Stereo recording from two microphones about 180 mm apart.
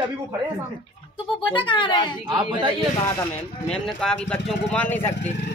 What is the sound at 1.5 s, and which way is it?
Speech, 25° left (ahead or behind).